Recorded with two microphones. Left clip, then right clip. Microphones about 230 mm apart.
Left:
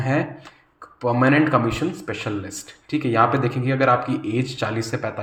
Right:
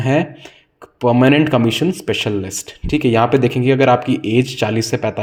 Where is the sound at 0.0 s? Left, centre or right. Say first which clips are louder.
Right 6 dB; right.